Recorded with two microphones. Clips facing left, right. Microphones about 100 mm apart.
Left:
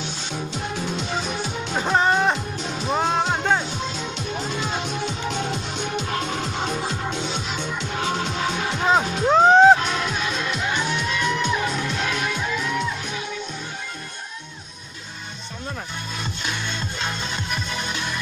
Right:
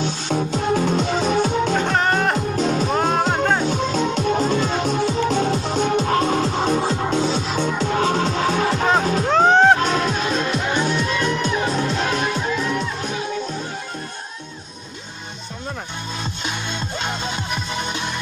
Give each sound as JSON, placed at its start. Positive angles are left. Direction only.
{"t": 0.0, "sound": "music", "side_deg": -45}
{"t": 1.7, "sound": "music", "side_deg": 5}
{"t": 2.5, "sound": "music", "side_deg": -45}
{"t": 2.9, "sound": "music", "side_deg": -5}
{"t": 3.6, "sound": "music", "side_deg": -45}
{"t": 9.3, "sound": "music", "side_deg": 5}
{"t": 9.8, "sound": "music", "side_deg": -45}